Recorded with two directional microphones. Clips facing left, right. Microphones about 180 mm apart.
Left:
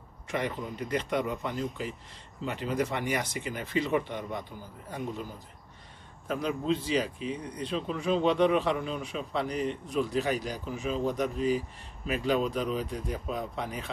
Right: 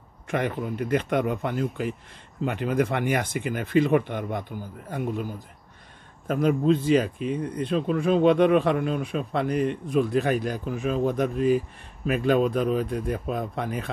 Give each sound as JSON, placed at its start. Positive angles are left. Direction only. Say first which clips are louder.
{"t": 0.3, "sound": "speech", "louder": "right 5 dB", "side_deg": -55}
{"t": 6.2, "sound": "speech", "louder": "right 8 dB", "side_deg": -50}